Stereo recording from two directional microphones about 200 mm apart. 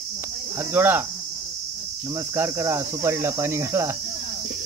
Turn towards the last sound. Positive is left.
turn(degrees=-15)  # may be behind; listen again after turning